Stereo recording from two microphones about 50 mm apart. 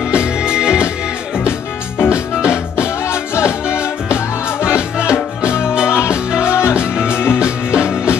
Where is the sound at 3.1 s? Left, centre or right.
Left.